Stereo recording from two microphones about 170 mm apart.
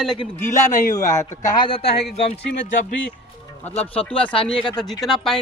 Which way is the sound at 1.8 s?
70° left (ahead or behind).